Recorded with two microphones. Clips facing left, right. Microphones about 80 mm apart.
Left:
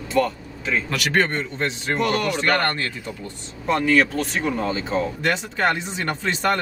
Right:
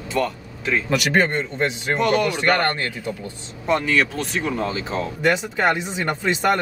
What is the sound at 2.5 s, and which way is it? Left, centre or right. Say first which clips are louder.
Speech: right 2 dB; centre.